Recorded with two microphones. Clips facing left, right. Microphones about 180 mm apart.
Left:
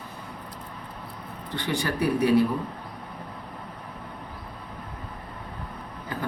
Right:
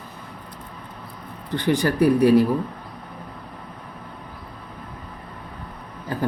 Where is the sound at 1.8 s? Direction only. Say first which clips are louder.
Right 7 dB; 40° right (ahead or behind).